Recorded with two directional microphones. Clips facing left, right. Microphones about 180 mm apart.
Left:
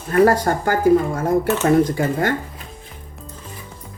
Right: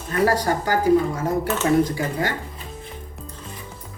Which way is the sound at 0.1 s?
50° left (ahead or behind).